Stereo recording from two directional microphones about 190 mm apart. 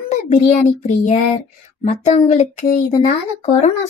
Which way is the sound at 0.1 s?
40° left (ahead or behind).